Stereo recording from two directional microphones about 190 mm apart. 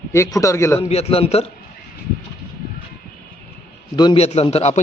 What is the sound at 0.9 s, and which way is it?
Speech, 35° left (ahead or behind).